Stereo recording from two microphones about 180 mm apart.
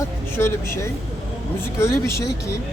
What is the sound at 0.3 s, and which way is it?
Speech, 15° left (ahead or behind).